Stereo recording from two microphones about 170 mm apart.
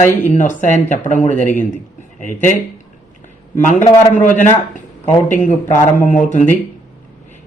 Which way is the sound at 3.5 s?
45° left (ahead or behind).